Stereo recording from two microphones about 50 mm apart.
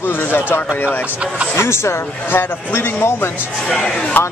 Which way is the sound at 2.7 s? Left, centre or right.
Left.